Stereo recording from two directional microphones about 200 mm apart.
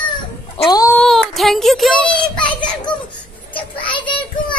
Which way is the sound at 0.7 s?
20° left (ahead or behind).